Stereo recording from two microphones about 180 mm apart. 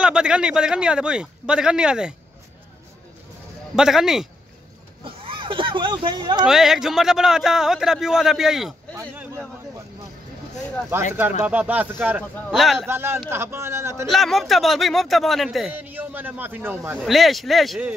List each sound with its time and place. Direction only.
0.0 s speech: 5° right (ahead or behind)
3.7 s speech: 5° right (ahead or behind)
5.0 s a sound: 30° right (ahead or behind)
6.4 s speech: centre (ahead or behind)
11.4 s a man's voice: 10° right (ahead or behind)
12.4 s speech: centre (ahead or behind)
12.8 s a man's voice: 15° right (ahead or behind)
14.0 s a man's voice: centre (ahead or behind)
17.0 s speech: centre (ahead or behind)